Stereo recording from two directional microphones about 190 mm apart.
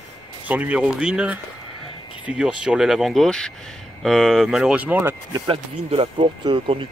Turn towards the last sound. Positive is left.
turn(degrees=-25)  # may be behind; listen again after turning